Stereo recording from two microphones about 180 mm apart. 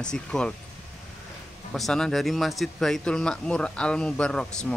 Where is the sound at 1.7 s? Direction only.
Centre (ahead or behind).